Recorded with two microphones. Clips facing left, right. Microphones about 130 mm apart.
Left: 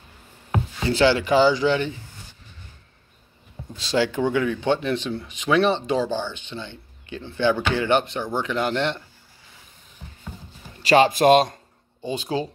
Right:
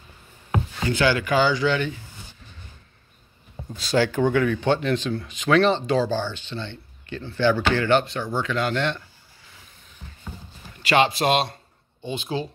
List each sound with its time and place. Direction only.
0.8 s speech: 30° left (ahead or behind)
3.8 s speech: 20° left (ahead or behind)
10.8 s speech: 40° left (ahead or behind)